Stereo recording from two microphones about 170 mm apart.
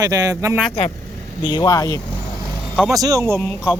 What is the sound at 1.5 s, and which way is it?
Speech, 25° left (ahead or behind).